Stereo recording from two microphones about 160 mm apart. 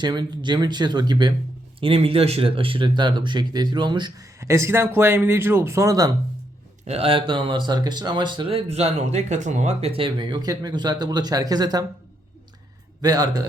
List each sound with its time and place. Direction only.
0.0 s speech: 25° right (ahead or behind)
6.8 s speech: 40° right (ahead or behind)
13.0 s speech: 25° right (ahead or behind)